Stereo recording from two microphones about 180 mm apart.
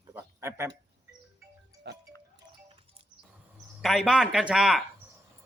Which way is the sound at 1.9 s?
70° right (ahead or behind).